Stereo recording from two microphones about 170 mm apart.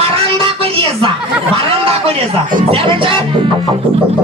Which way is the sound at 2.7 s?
30° right (ahead or behind).